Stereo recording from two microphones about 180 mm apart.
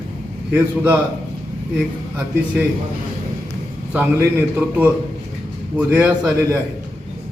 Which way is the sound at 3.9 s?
10° right (ahead or behind).